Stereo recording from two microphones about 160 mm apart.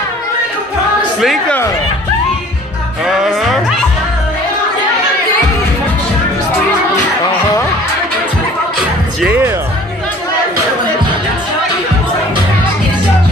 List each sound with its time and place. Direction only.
1.2 s speech: centre (ahead or behind)
3.1 s speech: centre (ahead or behind)
9.2 s music: 10° right (ahead or behind)